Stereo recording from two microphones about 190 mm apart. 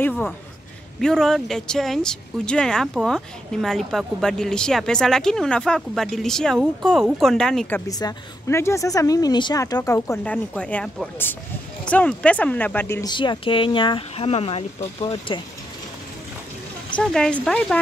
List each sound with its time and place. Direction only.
0.0 s speech: 10° left (ahead or behind)
7.9 s speech: 15° left (ahead or behind)
13.1 s speech: 25° left (ahead or behind)
16.9 s speech: 5° left (ahead or behind)